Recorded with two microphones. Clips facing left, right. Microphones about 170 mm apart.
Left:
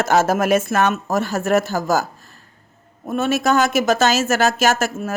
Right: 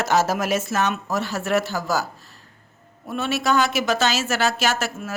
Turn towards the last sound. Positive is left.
turn(degrees=45)  # may be behind; listen again after turning